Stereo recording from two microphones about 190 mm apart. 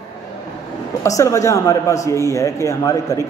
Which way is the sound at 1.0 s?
15° left (ahead or behind).